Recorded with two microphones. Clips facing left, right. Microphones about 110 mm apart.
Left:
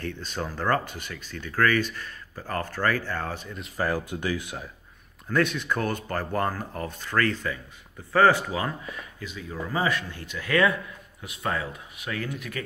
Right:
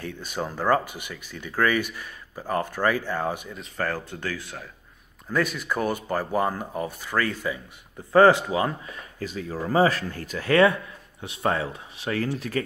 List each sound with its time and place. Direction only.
0.0 s speech: 10° right (ahead or behind)
3.5 s speech: 10° left (ahead or behind)
5.3 s speech: 5° right (ahead or behind); by 8.7 s 25° right (ahead or behind)
9.2 s speech: 40° right (ahead or behind)